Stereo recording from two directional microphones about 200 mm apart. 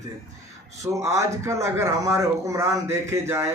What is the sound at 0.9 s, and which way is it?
Speech, 15° right (ahead or behind).